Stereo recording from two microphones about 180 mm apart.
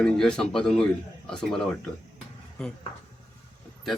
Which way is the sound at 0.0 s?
5° left (ahead or behind).